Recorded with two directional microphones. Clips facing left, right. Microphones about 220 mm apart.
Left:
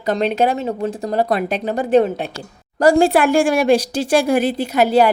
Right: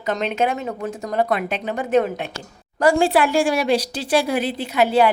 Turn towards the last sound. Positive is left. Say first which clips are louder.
# left 3 dB
turn(degrees=40)  # may be behind; listen again after turning